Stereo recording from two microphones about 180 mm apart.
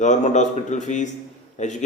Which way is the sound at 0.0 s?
40° left (ahead or behind).